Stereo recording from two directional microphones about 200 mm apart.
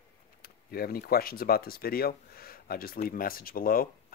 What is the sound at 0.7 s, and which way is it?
Speech, 50° left (ahead or behind).